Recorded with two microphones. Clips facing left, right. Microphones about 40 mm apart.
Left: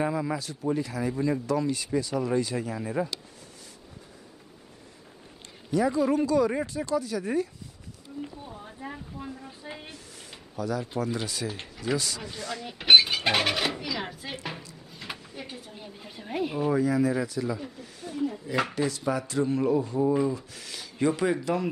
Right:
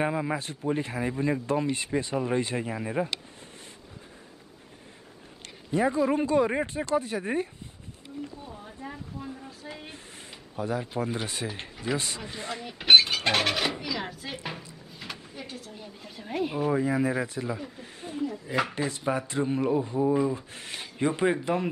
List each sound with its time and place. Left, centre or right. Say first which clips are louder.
0.0 s speech: even; right
5.7 s speech: even; right
8.2 s speech: left 1 dB; centre
9.5 s speech: left 1 dB; centre
10.5 s speech: even; right
11.4 s speech: left 1 dB; centre
12.6 s speech: even; centre
16.8 s speech: left 1 dB; right
20.0 s speech: right 1 dB; centre
20.3 s speech: right 2 dB; right